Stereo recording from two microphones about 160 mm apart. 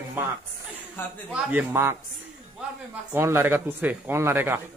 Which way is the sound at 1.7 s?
15° right (ahead or behind).